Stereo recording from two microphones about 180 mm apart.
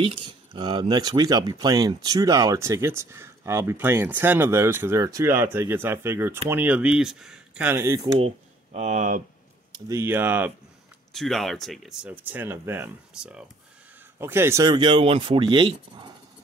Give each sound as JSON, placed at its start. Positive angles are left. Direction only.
{"t": 0.0, "sound": "speech", "side_deg": -25}
{"t": 8.7, "sound": "speech", "side_deg": -40}
{"t": 9.8, "sound": "speech", "side_deg": -15}
{"t": 11.1, "sound": "speech", "side_deg": 0}